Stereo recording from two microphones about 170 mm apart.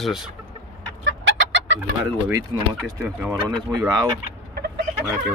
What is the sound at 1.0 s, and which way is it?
Chicken, 90° right.